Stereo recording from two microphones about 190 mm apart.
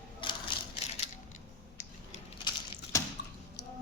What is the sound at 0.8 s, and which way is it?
Ratchet, 35° left (ahead or behind).